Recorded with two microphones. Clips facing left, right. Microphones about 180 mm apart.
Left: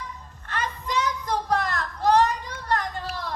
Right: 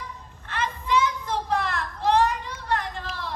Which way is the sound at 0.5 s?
40° left (ahead or behind).